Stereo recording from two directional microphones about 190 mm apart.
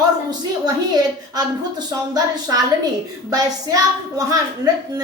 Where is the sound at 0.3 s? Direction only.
20° right (ahead or behind).